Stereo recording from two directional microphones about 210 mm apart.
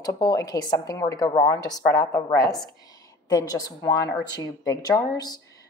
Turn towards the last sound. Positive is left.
turn(degrees=15)  # may be behind; listen again after turning